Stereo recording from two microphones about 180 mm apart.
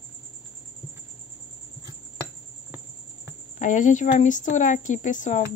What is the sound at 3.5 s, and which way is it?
Speech, 45° left (ahead or behind).